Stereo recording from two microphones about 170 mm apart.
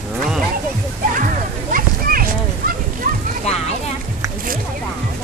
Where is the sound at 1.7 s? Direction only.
55° right (ahead or behind).